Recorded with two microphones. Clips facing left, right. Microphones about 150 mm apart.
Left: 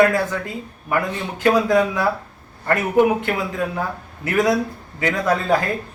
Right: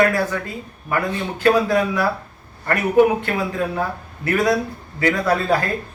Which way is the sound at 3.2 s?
15° left (ahead or behind).